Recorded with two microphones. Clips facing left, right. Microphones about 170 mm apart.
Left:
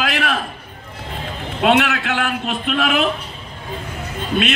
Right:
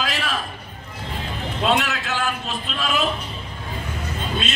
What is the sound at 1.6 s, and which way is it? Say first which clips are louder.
A man's voice: left 6 dB; 60° left (ahead or behind).